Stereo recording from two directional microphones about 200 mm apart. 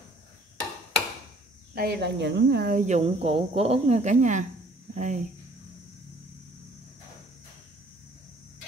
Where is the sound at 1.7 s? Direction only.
50° right (ahead or behind).